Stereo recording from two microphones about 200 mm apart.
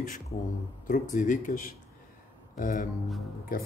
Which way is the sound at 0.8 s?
40° left (ahead or behind).